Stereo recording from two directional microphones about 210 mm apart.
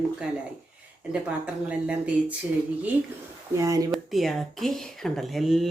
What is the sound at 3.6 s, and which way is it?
Speech, 15° right (ahead or behind).